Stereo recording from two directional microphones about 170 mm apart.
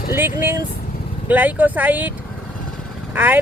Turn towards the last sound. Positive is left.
turn(degrees=-10)  # may be behind; listen again after turning